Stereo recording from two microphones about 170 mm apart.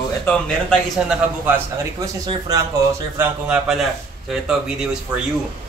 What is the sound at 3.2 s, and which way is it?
Speech, 5° right (ahead or behind).